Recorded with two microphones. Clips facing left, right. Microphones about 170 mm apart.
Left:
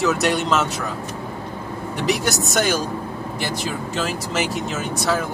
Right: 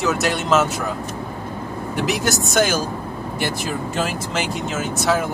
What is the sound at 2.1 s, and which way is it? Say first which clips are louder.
Speech: left 2 dB; centre (ahead or behind).